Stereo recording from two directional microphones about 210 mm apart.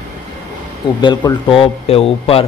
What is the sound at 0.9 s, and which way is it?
Speech, 20° left (ahead or behind).